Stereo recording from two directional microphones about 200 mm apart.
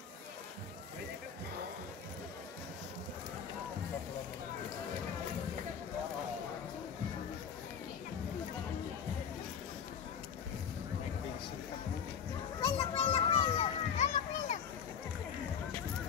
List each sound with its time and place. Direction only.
12.5 s children playing: 25° left (ahead or behind)